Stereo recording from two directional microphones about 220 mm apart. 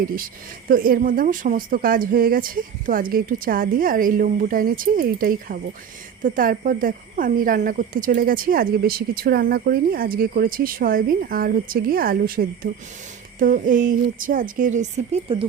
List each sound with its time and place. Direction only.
0.7 s speech: 40° right (ahead or behind)